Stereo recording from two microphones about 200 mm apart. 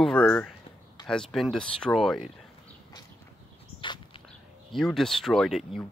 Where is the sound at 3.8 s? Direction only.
25° left (ahead or behind).